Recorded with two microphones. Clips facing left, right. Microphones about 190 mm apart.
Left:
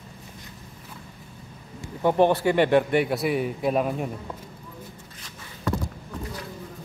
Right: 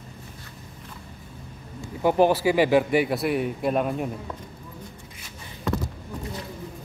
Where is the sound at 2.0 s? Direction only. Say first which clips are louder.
Even; 5° right (ahead or behind).